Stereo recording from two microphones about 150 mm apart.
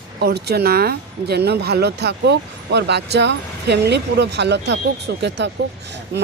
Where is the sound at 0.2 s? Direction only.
90° right.